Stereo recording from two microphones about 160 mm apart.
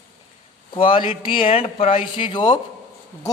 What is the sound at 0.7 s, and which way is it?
Speech, 30° left (ahead or behind).